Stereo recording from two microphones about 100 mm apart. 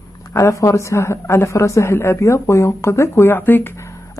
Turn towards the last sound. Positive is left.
turn(degrees=25)  # may be behind; listen again after turning